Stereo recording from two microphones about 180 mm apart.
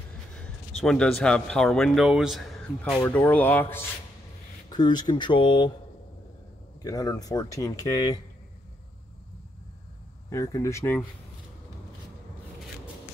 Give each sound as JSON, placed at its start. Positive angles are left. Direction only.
{"t": 0.4, "sound": "a man's voice", "side_deg": 5}
{"t": 4.6, "sound": "speech", "side_deg": 25}
{"t": 6.8, "sound": "speech", "side_deg": 20}
{"t": 10.3, "sound": "speech", "side_deg": 15}